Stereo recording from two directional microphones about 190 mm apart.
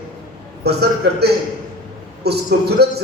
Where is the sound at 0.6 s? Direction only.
60° right (ahead or behind).